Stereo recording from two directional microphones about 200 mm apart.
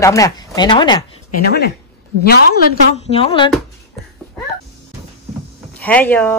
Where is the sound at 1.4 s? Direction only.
55° left (ahead or behind).